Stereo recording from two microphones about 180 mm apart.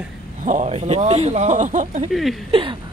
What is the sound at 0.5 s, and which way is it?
Speech, 40° right (ahead or behind).